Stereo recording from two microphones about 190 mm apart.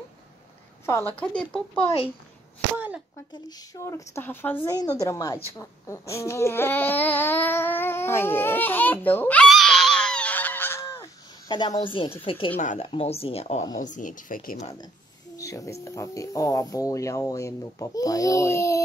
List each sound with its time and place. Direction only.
1.2 s speech: 5° left (ahead or behind)
3.4 s a woman's voice: 20° left (ahead or behind); by 14.7 s 45° left (ahead or behind)
15.3 s speech: 15° left (ahead or behind)